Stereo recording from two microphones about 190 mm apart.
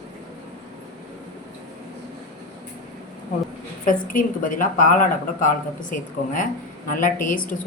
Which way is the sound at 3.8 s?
45° left (ahead or behind).